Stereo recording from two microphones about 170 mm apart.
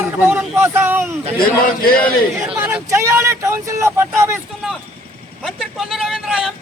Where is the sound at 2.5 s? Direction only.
10° right (ahead or behind).